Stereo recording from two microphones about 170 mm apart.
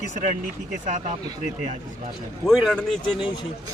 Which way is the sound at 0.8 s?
50° right (ahead or behind).